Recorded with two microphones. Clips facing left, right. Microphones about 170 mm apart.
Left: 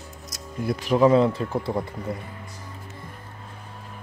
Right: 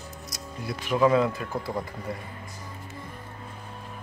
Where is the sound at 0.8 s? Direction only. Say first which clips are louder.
Left 4 dB; 30° left (ahead or behind).